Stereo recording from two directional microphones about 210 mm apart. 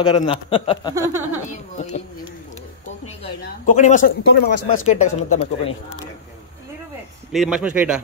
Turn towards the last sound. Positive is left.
turn(degrees=-5)  # may be behind; listen again after turning